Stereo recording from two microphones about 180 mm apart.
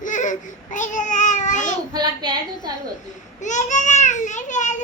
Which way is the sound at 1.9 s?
25° right (ahead or behind).